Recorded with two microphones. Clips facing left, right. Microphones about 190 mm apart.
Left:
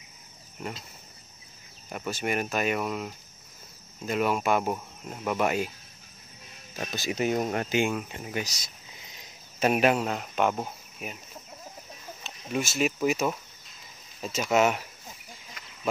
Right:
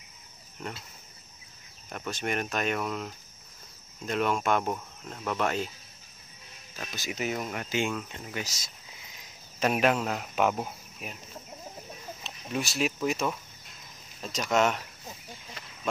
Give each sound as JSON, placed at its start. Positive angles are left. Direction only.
{"t": 1.9, "sound": "speech", "side_deg": 5}
{"t": 6.8, "sound": "speech", "side_deg": 30}
{"t": 7.7, "sound": "speech", "side_deg": 15}
{"t": 9.6, "sound": "speech", "side_deg": 5}
{"t": 12.2, "sound": "speech", "side_deg": 0}
{"t": 15.6, "sound": "cricket", "side_deg": -30}